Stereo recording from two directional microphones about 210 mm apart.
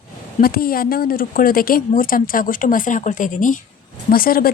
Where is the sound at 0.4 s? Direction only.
45° left (ahead or behind).